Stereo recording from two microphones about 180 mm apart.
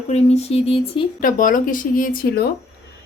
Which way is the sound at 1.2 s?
50° left (ahead or behind).